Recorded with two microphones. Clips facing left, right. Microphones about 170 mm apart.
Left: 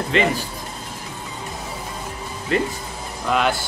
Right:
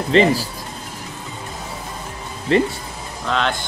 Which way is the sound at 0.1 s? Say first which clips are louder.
Right 6 dB; 35° right (ahead or behind).